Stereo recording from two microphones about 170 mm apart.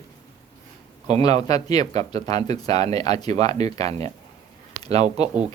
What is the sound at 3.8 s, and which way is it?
Speech, 40° right (ahead or behind).